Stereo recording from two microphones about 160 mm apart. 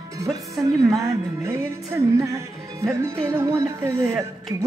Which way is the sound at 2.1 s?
20° right (ahead or behind).